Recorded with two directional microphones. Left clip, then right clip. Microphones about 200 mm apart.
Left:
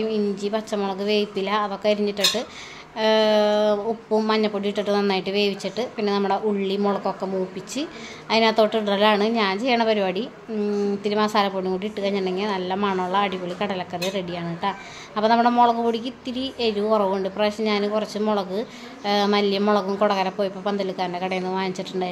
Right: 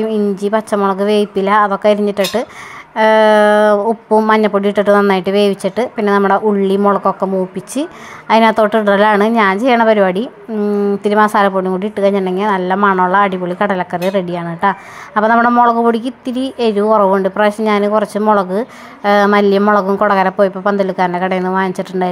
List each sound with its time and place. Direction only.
0.1 s a woman's voice: 30° right (ahead or behind)